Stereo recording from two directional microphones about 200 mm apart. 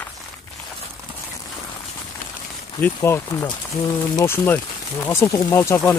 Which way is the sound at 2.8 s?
10° left (ahead or behind).